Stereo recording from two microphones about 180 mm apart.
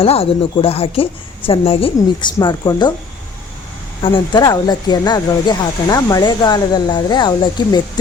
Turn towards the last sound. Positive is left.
turn(degrees=25)  # may be behind; listen again after turning